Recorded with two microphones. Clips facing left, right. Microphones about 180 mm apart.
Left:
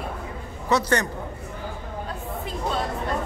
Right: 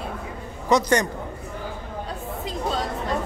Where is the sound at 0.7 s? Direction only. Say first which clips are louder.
Right 3 dB; 15° right (ahead or behind).